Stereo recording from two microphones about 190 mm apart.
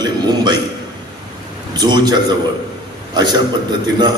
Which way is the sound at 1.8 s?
20° right (ahead or behind).